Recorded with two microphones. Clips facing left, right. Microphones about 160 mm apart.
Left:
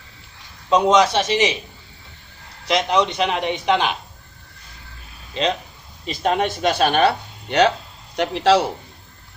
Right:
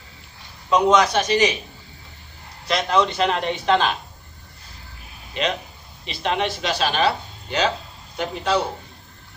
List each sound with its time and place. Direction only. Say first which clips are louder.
0.7 s a man's voice: left 2 dB; 25° left (ahead or behind)
2.7 s a man's voice: left 1 dB; 20° left (ahead or behind)
5.4 s speech: left 3 dB; 30° left (ahead or behind)
6.0 s speech: left 3 dB; 45° left (ahead or behind); by 7.7 s 65° left (ahead or behind)
8.2 s a man's voice: left 6 dB; 85° left